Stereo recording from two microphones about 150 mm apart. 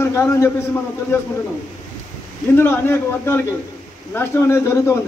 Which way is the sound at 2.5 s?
15° left (ahead or behind).